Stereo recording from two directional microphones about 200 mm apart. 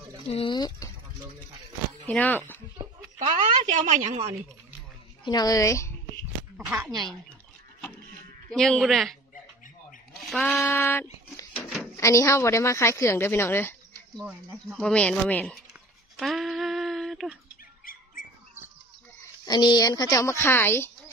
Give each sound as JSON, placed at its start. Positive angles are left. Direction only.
{"t": 0.3, "sound": "speech", "side_deg": 25}
{"t": 2.0, "sound": "speech", "side_deg": 10}
{"t": 3.6, "sound": "a woman's voice", "side_deg": -35}
{"t": 5.2, "sound": "a woman's voice", "side_deg": 20}
{"t": 6.5, "sound": "speech", "side_deg": -5}
{"t": 8.5, "sound": "speech", "side_deg": 5}
{"t": 10.2, "sound": "a woman's voice", "side_deg": 5}
{"t": 14.1, "sound": "speech", "side_deg": 0}
{"t": 16.2, "sound": "humming", "side_deg": 0}
{"t": 19.4, "sound": "a woman's voice", "side_deg": 20}